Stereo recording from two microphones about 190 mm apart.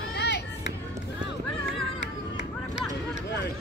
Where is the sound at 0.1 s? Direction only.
65° left (ahead or behind).